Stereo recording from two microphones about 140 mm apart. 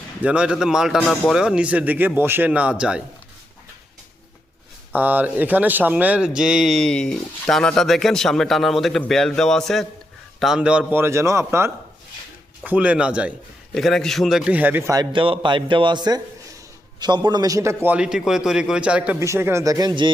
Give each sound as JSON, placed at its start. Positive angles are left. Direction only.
{"t": 0.2, "sound": "speech", "side_deg": -10}
{"t": 4.9, "sound": "speech", "side_deg": -10}
{"t": 12.6, "sound": "speech", "side_deg": -10}
{"t": 13.7, "sound": "speech", "side_deg": 5}
{"t": 14.9, "sound": "a man's voice", "side_deg": -40}
{"t": 17.8, "sound": "speech", "side_deg": -5}
{"t": 19.2, "sound": "speech", "side_deg": -20}